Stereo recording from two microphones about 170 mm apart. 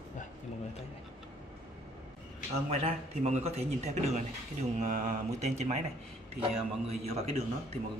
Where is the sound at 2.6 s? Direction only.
35° right (ahead or behind).